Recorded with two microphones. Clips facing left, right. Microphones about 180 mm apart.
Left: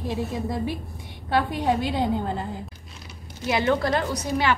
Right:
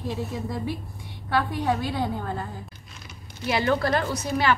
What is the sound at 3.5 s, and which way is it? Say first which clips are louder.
Speech: left 1 dB; 20° left (ahead or behind).